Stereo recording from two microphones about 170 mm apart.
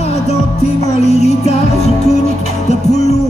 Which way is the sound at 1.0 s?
40° left (ahead or behind).